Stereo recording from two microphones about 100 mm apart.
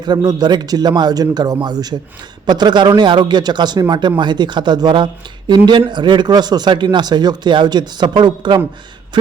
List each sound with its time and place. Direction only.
0.0 s speech: 45° right (ahead or behind)